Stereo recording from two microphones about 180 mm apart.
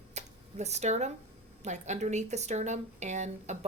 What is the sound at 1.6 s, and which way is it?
A woman's voice, 40° right (ahead or behind).